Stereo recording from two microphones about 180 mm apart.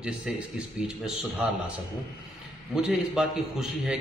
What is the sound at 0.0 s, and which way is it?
A man's voice, 5° right (ahead or behind).